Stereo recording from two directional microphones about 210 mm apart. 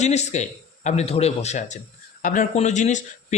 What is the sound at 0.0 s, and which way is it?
Speech, 30° left (ahead or behind).